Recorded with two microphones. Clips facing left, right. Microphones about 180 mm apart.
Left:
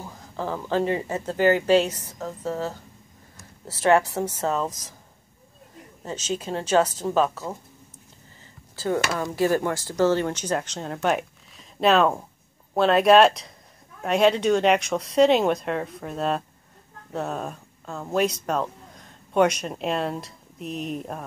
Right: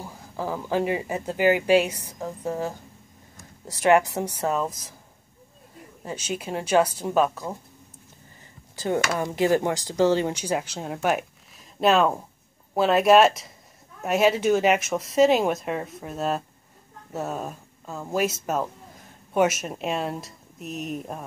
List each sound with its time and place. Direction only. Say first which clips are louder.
0.0 s speech: even; 10° right (ahead or behind)
6.0 s speech: left 2 dB; 10° right (ahead or behind)
8.7 s speech: even; 20° right (ahead or behind); by 21.2 s centre (ahead or behind)